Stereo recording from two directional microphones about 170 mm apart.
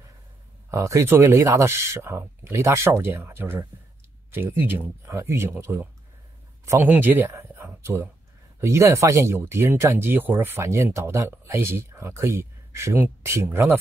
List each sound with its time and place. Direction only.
0.7 s speech: 15° right (ahead or behind)